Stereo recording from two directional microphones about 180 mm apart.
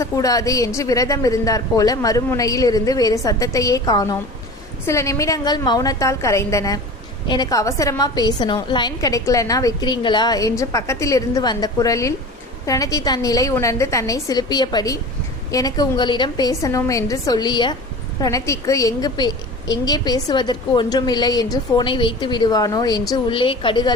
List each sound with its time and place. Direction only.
0.0 s a woman's voice: 20° left (ahead or behind)